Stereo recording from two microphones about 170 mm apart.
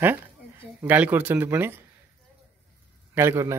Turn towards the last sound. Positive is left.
turn(degrees=-15)  # may be behind; listen again after turning